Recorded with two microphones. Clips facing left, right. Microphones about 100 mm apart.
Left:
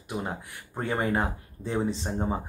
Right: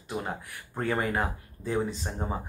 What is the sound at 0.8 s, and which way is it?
Speech, 25° left (ahead or behind).